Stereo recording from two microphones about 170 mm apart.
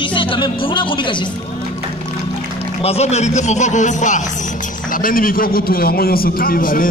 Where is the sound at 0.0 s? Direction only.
30° left (ahead or behind).